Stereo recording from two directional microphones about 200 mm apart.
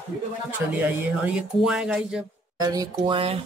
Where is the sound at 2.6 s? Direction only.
20° right (ahead or behind).